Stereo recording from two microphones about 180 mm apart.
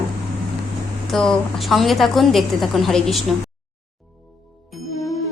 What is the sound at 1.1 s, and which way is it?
A woman's voice, centre (ahead or behind).